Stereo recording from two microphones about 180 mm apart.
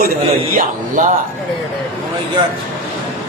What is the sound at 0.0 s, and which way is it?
A man's voice, 50° right (ahead or behind).